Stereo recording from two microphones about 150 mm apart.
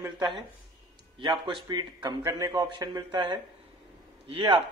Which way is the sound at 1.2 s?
30° right (ahead or behind).